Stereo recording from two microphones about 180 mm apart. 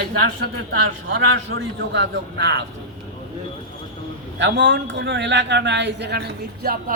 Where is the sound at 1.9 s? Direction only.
70° right (ahead or behind).